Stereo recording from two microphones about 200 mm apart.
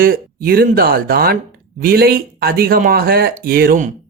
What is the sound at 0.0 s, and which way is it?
Speech, 45° right (ahead or behind).